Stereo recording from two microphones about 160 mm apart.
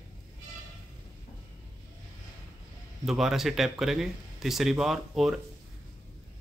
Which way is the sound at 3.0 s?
Centre (ahead or behind).